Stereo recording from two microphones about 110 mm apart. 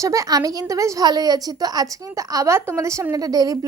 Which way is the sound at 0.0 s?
30° right (ahead or behind).